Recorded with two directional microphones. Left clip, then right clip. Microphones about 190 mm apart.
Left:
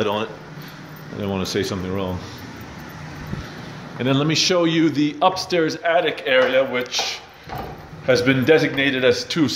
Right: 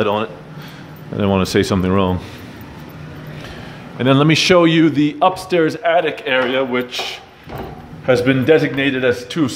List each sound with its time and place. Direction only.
0.0 s speech: 10° right (ahead or behind)
1.1 s speech: 25° right (ahead or behind)
4.0 s speech: 20° right (ahead or behind)
4.3 s speech: 30° right (ahead or behind); by 9.5 s centre (ahead or behind)